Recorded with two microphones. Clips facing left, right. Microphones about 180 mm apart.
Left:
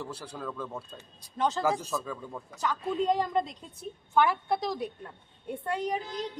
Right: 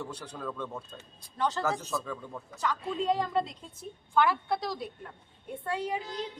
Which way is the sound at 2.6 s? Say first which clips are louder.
Left 2 dB; 15° left (ahead or behind).